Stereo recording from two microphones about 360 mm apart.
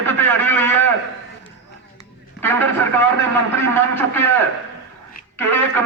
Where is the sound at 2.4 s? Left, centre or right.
Centre.